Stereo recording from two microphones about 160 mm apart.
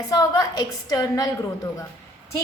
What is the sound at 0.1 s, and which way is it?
A woman's voice, 25° left (ahead or behind).